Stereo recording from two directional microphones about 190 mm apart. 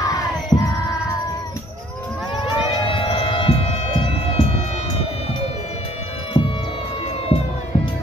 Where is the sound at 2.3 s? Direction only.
25° left (ahead or behind).